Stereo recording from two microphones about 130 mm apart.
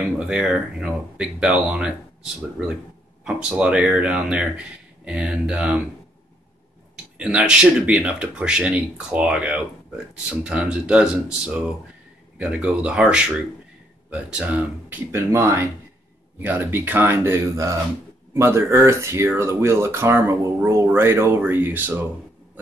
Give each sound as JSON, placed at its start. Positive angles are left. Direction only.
{"t": 0.0, "sound": "speech", "side_deg": -5}
{"t": 3.3, "sound": "speech", "side_deg": -5}
{"t": 7.2, "sound": "speech", "side_deg": -5}